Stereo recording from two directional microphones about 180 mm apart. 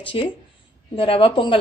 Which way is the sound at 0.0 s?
30° left (ahead or behind).